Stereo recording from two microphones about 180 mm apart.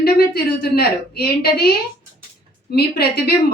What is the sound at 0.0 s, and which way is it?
A woman's voice, 60° left (ahead or behind).